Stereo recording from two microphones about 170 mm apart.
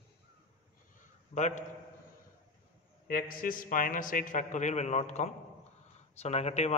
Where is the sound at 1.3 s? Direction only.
45° left (ahead or behind).